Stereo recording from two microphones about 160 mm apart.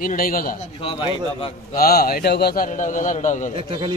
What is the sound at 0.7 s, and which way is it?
Speech, 35° left (ahead or behind).